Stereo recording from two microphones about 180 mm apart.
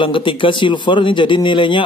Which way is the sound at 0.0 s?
30° left (ahead or behind).